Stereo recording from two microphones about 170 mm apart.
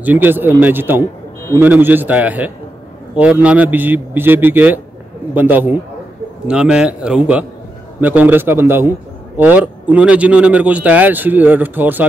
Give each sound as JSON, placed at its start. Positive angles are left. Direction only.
{"t": 0.0, "sound": "a man's voice", "side_deg": -10}